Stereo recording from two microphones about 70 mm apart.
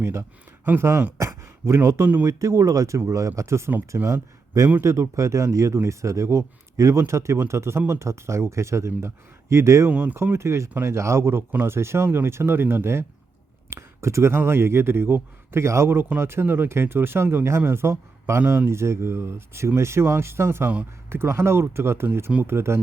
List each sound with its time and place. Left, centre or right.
0.0 s speech: right
3.7 s speech: right
4.0 s speech: right
9.9 s speech: right
10.3 s speech: right